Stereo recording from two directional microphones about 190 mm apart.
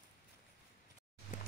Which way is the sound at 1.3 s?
40° left (ahead or behind).